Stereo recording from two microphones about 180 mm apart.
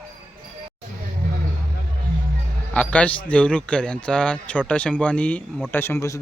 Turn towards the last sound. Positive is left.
turn(degrees=15)  # may be behind; listen again after turning